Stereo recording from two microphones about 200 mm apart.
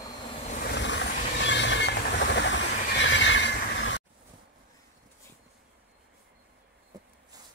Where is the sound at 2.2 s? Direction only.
65° left (ahead or behind).